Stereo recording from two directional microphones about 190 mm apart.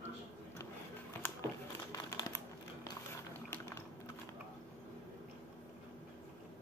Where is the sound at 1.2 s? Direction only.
15° left (ahead or behind).